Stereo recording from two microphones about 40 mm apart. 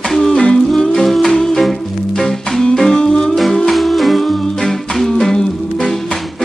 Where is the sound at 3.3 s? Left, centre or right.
Centre.